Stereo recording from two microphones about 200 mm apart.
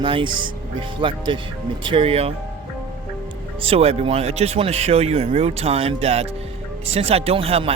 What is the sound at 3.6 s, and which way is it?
Speech, 30° right (ahead or behind).